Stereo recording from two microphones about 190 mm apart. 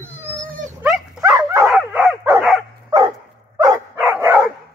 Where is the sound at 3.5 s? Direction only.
15° right (ahead or behind).